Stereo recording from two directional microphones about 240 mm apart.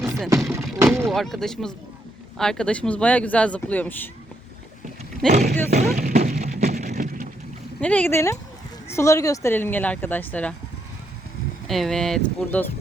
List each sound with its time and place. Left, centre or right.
0.5 s vehicle: centre
1.0 s speech: centre
5.3 s speech: right
5.7 s a sound: right
7.8 s speech: centre
11.7 s speech: centre